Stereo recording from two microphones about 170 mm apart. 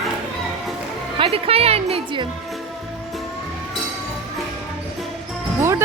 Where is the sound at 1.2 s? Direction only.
35° right (ahead or behind).